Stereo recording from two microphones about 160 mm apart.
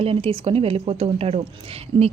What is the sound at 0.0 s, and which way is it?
Speech, 35° right (ahead or behind).